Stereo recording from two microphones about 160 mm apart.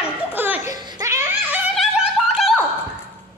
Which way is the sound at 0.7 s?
25° right (ahead or behind).